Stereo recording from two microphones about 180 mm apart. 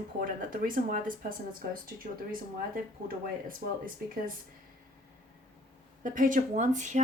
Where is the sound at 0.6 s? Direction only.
50° right (ahead or behind).